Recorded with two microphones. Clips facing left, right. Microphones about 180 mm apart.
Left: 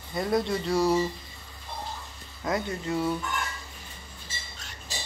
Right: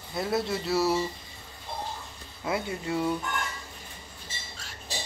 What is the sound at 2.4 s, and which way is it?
Speech, 10° right (ahead or behind).